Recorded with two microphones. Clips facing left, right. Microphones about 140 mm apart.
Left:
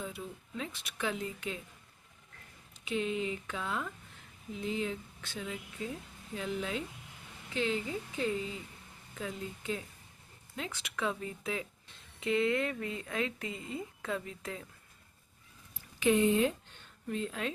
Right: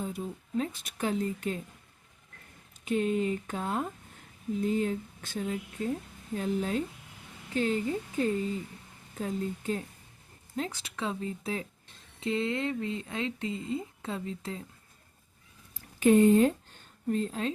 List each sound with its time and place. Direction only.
0.0 s speech: 40° right (ahead or behind)
2.8 s speech: 45° right (ahead or behind); by 14.6 s 30° right (ahead or behind)
16.0 s speech: 45° right (ahead or behind)